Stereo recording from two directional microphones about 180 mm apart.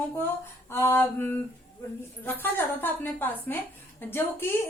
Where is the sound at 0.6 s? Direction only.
15° left (ahead or behind).